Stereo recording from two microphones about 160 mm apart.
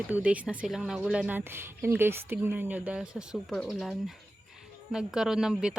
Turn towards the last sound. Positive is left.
turn(degrees=-5)  # may be behind; listen again after turning